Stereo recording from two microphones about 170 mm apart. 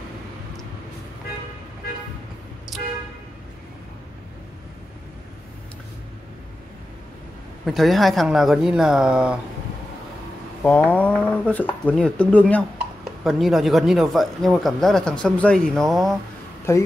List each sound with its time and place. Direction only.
2.7 s vehicle: centre (ahead or behind)
7.6 s speech: centre (ahead or behind)
10.6 s speech: 10° left (ahead or behind)
16.7 s speech: 15° left (ahead or behind)